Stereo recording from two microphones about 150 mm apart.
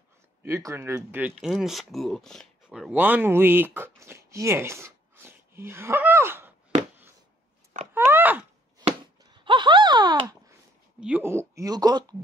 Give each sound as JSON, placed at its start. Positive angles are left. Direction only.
{"t": 0.4, "sound": "speech", "side_deg": -20}
{"t": 0.9, "sound": "speech", "side_deg": -10}
{"t": 2.9, "sound": "speech", "side_deg": -10}
{"t": 7.9, "sound": "grunt", "side_deg": -15}
{"t": 9.2, "sound": "a sound", "side_deg": -30}
{"t": 11.0, "sound": "speech", "side_deg": -10}